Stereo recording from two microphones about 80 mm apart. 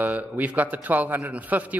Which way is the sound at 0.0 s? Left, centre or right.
Right.